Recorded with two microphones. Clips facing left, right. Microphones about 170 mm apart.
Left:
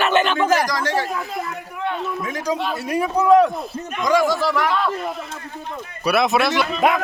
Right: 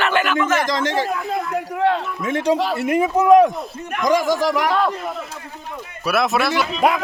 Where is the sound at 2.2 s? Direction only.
25° right (ahead or behind).